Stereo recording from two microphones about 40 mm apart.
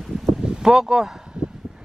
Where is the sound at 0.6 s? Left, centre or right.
Centre.